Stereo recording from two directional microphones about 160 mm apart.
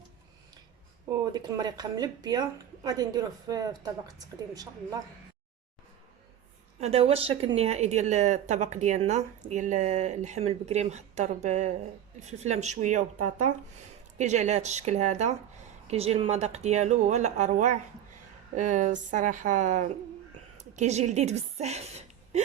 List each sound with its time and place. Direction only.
1.2 s a woman's voice: 25° right (ahead or behind)
6.7 s a woman's voice: 40° right (ahead or behind)